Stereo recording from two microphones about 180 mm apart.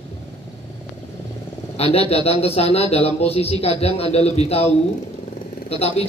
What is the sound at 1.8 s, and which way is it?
Speech, 35° left (ahead or behind).